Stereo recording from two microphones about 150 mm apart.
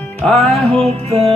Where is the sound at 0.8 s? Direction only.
40° right (ahead or behind).